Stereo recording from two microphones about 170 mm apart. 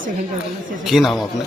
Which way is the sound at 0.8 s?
Centre (ahead or behind).